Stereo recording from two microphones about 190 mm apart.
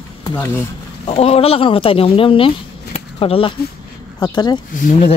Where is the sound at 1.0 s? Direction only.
30° left (ahead or behind).